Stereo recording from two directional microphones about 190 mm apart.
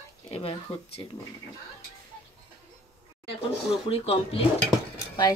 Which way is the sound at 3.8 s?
30° left (ahead or behind).